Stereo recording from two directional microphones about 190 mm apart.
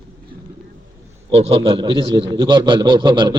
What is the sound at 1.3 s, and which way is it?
A man's voice, 30° right (ahead or behind).